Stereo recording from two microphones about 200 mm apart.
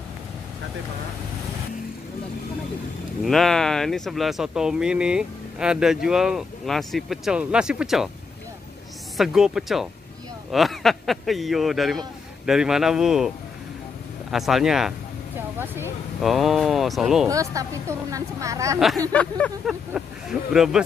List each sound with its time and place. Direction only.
3.3 s speech: centre (ahead or behind)
9.1 s speech: centre (ahead or behind)
14.3 s speech: centre (ahead or behind)
17.3 s a woman's voice: 15° right (ahead or behind)
19.1 s speech: 5° left (ahead or behind)